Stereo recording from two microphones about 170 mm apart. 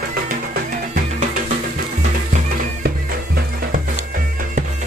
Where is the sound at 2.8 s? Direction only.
65° right (ahead or behind).